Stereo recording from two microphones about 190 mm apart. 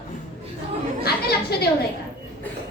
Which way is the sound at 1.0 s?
55° left (ahead or behind).